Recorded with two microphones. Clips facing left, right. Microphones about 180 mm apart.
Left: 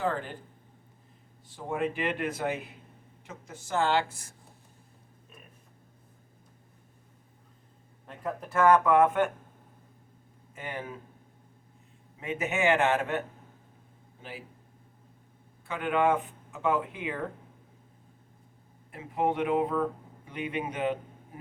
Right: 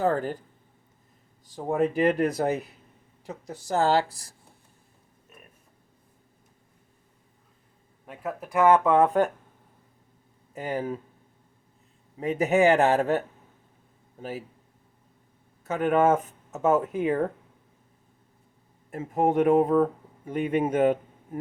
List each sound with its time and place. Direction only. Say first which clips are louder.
0.0 s a man's voice: right 6 dB; 40° right (ahead or behind)
1.5 s a man's voice: right 6 dB; 40° right (ahead or behind)
8.0 s speech: right 1 dB; 10° right (ahead or behind); by 9.3 s 35° right (ahead or behind)
10.5 s a man's voice: right 8 dB; 40° right (ahead or behind)
12.2 s a man's voice: right 7 dB; 35° right (ahead or behind)
15.6 s speech: right 5 dB; 40° right (ahead or behind)
18.9 s speech: right 5 dB; 45° right (ahead or behind)